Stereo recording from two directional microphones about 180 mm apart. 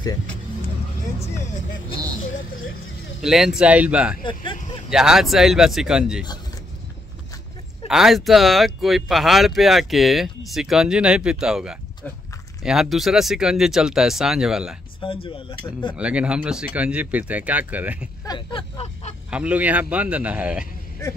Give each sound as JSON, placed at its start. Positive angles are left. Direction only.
{"t": 3.2, "sound": "speech", "side_deg": -5}
{"t": 4.2, "sound": "speech", "side_deg": 25}
{"t": 4.8, "sound": "speech", "side_deg": -5}
{"t": 7.9, "sound": "speech", "side_deg": 0}
{"t": 15.2, "sound": "speech", "side_deg": 30}
{"t": 16.0, "sound": "speech", "side_deg": -5}
{"t": 18.2, "sound": "speech", "side_deg": 25}
{"t": 19.3, "sound": "speech", "side_deg": -5}